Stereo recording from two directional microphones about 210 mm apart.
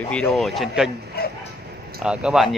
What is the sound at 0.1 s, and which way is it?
Speech, 5° left (ahead or behind).